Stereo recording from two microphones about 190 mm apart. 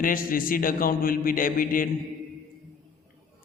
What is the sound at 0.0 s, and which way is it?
Speech, 50° left (ahead or behind).